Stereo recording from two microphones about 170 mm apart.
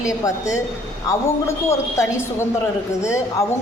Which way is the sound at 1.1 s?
15° left (ahead or behind).